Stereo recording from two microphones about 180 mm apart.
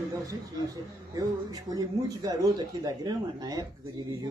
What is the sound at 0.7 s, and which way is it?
Speech, 20° right (ahead or behind).